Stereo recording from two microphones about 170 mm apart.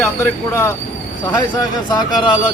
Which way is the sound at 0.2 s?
15° left (ahead or behind).